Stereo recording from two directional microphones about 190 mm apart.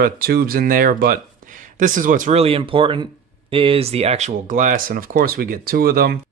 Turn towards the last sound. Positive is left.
turn(degrees=-55)  # may be behind; listen again after turning